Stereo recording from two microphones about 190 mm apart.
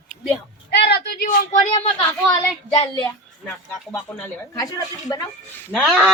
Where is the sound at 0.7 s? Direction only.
65° left (ahead or behind).